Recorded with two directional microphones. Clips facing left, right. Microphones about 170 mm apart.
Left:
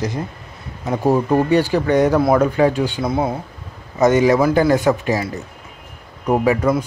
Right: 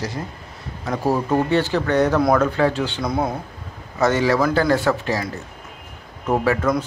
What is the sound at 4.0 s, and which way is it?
Speech, 20° left (ahead or behind).